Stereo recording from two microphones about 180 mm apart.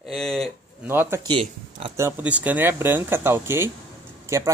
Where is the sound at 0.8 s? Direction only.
10° right (ahead or behind).